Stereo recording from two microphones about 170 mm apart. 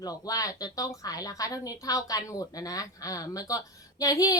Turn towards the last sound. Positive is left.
turn(degrees=20)  # may be behind; listen again after turning